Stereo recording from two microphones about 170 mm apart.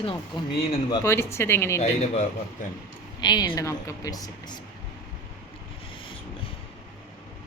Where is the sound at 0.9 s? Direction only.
20° left (ahead or behind).